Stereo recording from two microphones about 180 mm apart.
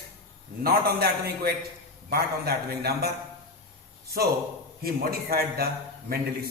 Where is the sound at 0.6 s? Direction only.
60° right (ahead or behind).